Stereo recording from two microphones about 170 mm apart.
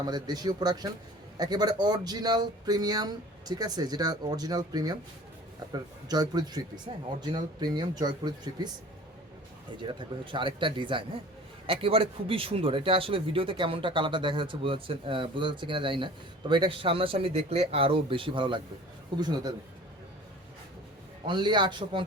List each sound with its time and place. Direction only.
0.0 s speech: 25° right (ahead or behind)
9.8 s speech: 30° right (ahead or behind)
21.2 s speech: 25° right (ahead or behind)